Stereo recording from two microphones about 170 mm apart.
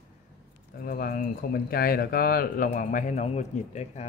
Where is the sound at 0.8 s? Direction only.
55° left (ahead or behind).